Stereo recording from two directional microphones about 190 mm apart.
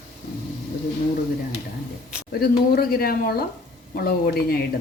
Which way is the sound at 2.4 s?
55° left (ahead or behind).